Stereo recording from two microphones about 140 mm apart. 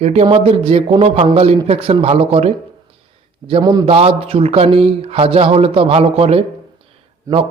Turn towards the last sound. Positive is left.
turn(degrees=-25)  # may be behind; listen again after turning